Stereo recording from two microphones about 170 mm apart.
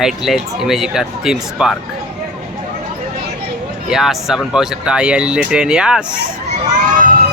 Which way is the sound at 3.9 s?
Centre (ahead or behind).